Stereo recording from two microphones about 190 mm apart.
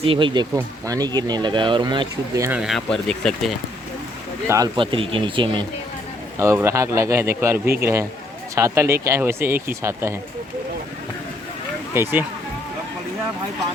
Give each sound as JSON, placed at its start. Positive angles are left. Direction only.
{"t": 0.0, "sound": "speech", "side_deg": -25}
{"t": 2.6, "sound": "speech", "side_deg": 0}
{"t": 4.4, "sound": "speech", "side_deg": -20}
{"t": 6.4, "sound": "speech", "side_deg": -15}
{"t": 11.9, "sound": "speech", "side_deg": -10}